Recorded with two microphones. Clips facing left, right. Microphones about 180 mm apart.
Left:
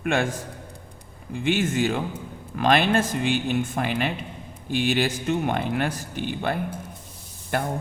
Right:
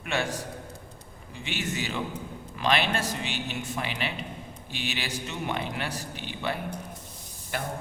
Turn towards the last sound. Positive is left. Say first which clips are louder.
# left 7 dB
turn(degrees=55)  # may be behind; listen again after turning